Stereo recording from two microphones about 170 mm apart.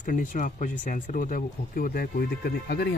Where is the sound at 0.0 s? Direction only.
50° left (ahead or behind).